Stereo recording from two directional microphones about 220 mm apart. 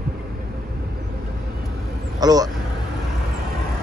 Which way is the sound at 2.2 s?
15° right (ahead or behind).